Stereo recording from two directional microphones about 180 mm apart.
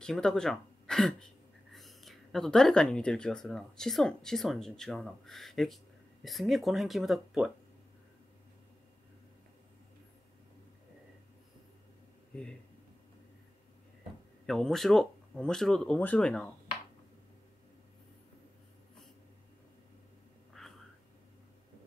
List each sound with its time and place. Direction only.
0.0 s speech: 5° left (ahead or behind)
14.4 s speech: centre (ahead or behind)
20.5 s a sound: centre (ahead or behind)